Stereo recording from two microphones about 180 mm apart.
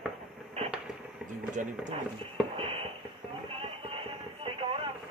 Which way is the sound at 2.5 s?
30° right (ahead or behind).